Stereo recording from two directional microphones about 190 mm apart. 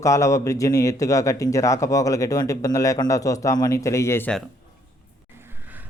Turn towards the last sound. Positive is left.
turn(degrees=-10)  # may be behind; listen again after turning